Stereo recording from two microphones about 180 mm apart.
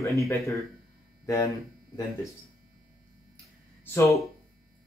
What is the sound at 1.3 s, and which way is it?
Speech, 20° left (ahead or behind).